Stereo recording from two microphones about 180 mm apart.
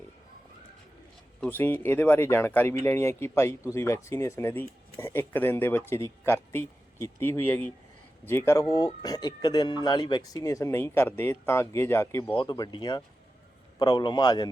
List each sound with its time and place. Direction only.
1.4 s a man's voice: 10° left (ahead or behind)
12.3 s speech: 25° left (ahead or behind)